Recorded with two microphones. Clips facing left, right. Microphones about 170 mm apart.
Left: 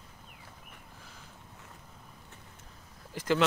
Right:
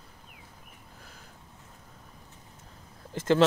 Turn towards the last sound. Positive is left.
turn(degrees=-25)  # may be behind; listen again after turning